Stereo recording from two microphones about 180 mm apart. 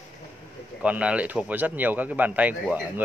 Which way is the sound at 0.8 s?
5° right (ahead or behind).